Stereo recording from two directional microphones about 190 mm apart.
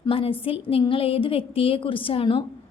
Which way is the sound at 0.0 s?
30° left (ahead or behind).